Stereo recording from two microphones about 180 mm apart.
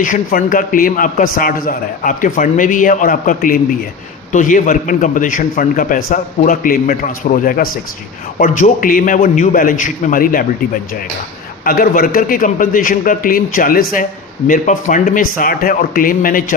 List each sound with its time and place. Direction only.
0.0 s a man's voice: 50° left (ahead or behind)
11.6 s a man's voice: 55° left (ahead or behind)